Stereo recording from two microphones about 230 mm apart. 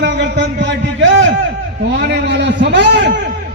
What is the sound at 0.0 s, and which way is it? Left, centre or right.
A man's voice, right.